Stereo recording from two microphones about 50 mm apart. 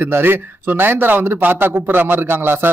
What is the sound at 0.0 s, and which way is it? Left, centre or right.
Speech, right.